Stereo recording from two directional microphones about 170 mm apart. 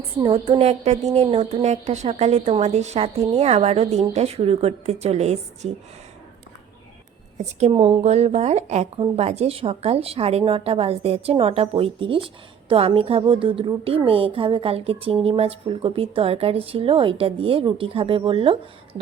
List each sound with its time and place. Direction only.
0.2 s speech: 30° right (ahead or behind)
7.3 s speech: 40° right (ahead or behind)